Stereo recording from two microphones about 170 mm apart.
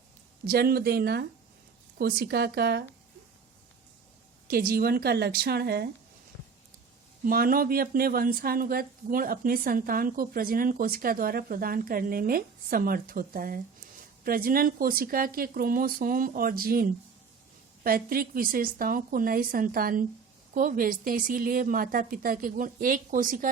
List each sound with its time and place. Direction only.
0.4 s speech: 65° right (ahead or behind)
4.4 s a woman's voice: 60° right (ahead or behind)
7.3 s a woman's voice: 55° right (ahead or behind)